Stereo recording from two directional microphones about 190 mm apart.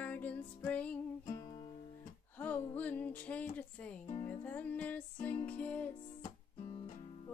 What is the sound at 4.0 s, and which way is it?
Music, 40° left (ahead or behind).